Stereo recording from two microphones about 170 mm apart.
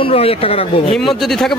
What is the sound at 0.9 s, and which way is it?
Speech, centre (ahead or behind).